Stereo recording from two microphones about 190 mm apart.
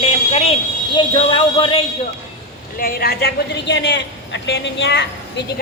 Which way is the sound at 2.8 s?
50° left (ahead or behind).